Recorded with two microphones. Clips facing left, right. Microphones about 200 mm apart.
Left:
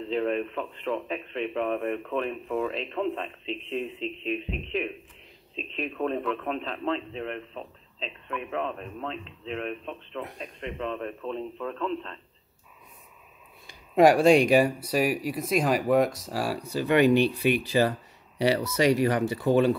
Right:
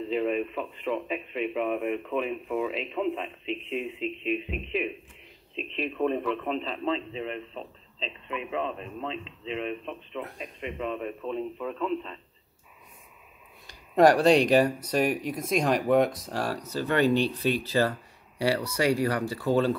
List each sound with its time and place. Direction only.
0.0 s speech: 5° right (ahead or behind)
13.9 s speech: 10° left (ahead or behind)